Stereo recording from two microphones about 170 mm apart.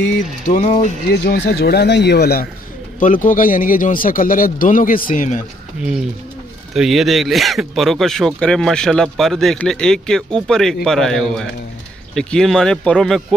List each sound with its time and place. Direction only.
0.5 s a man's voice: 50° left (ahead or behind)
1.1 s speech: 75° left (ahead or behind)
3.0 s a man's voice: 50° left (ahead or behind)
6.7 s speech: centre (ahead or behind)